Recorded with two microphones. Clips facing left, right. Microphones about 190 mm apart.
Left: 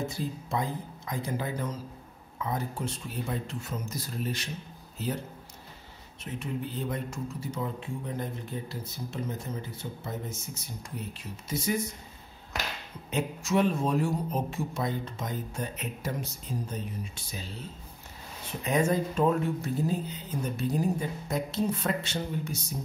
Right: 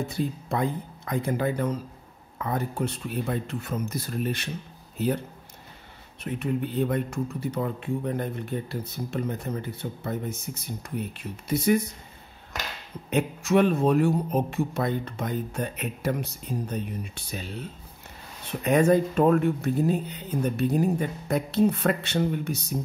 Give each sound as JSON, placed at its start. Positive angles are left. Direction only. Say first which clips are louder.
{"t": 0.1, "sound": "speech", "louder": "right 4 dB", "side_deg": -60}
{"t": 6.2, "sound": "speech", "louder": "right 6 dB", "side_deg": -60}
{"t": 13.1, "sound": "speech", "louder": "right 5 dB", "side_deg": -60}